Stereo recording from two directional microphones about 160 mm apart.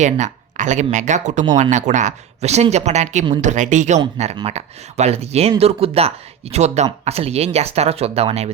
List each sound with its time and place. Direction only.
0.0 s speech: 50° right (ahead or behind)